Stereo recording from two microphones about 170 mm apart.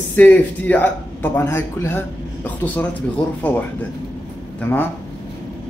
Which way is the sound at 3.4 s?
10° left (ahead or behind).